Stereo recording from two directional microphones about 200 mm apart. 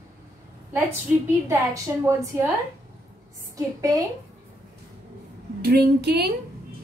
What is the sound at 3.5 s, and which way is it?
Speech, 15° right (ahead or behind).